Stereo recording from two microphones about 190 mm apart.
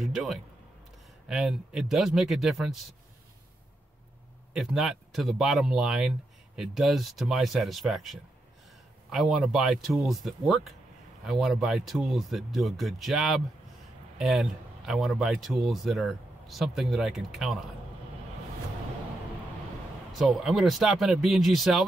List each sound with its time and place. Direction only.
0.0 s a sound: centre (ahead or behind)
1.3 s speech: centre (ahead or behind)
4.6 s speech: centre (ahead or behind)
20.1 s speech: centre (ahead or behind)